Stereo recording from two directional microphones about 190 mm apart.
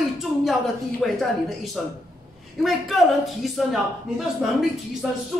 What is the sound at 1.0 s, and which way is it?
Speech, centre (ahead or behind).